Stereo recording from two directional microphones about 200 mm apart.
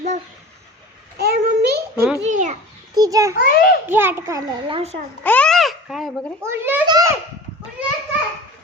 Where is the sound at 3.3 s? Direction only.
45° left (ahead or behind).